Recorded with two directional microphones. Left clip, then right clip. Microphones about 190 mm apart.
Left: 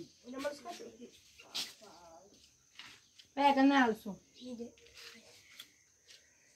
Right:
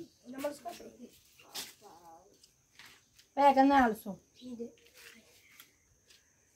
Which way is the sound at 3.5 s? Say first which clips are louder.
Right 3 dB; 5° right (ahead or behind).